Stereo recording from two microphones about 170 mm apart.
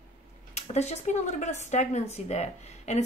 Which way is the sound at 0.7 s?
40° left (ahead or behind).